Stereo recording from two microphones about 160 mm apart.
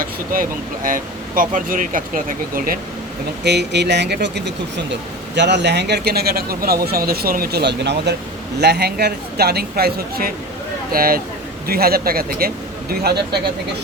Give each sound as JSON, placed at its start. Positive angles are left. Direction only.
{"t": 0.0, "sound": "speech", "side_deg": -60}
{"t": 3.4, "sound": "a man's voice", "side_deg": -90}